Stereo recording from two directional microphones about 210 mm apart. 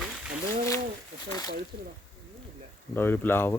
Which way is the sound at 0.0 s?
5° right (ahead or behind).